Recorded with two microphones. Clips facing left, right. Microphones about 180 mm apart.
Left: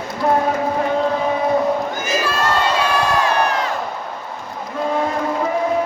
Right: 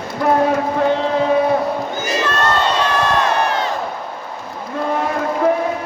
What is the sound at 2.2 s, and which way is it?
Crowd, 10° left (ahead or behind).